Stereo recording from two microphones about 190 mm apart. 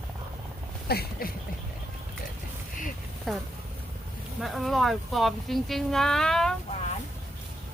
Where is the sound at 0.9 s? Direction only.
55° left (ahead or behind).